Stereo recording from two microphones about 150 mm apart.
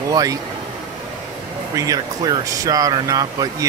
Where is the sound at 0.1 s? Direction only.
25° right (ahead or behind).